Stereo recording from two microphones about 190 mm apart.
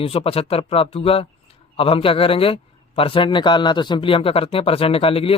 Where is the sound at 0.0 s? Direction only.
30° left (ahead or behind).